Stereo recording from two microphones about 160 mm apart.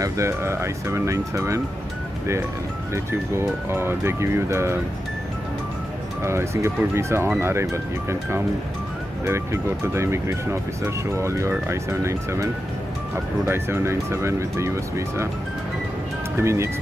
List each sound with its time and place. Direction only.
0.0 s speech: 20° right (ahead or behind)
2.9 s speech: 15° right (ahead or behind)
6.2 s speech: 15° right (ahead or behind)
16.3 s speech: 15° right (ahead or behind)